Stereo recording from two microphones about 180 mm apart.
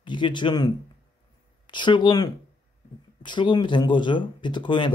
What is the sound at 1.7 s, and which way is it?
Speech, 25° left (ahead or behind).